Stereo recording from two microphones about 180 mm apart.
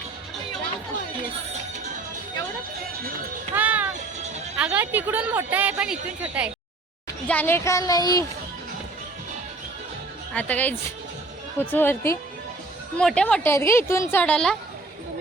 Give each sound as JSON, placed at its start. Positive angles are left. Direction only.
{"t": 3.5, "sound": "music", "side_deg": -10}
{"t": 4.5, "sound": "speech", "side_deg": -5}
{"t": 7.3, "sound": "a woman's voice", "side_deg": 10}
{"t": 10.3, "sound": "a woman's voice", "side_deg": 10}